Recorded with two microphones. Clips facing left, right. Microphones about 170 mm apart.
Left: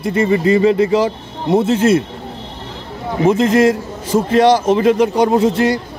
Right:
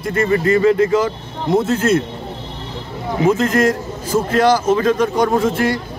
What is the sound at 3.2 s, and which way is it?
A man's voice, 25° left (ahead or behind).